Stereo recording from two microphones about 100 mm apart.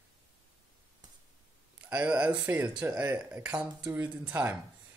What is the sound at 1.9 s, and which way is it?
Speech, 15° right (ahead or behind).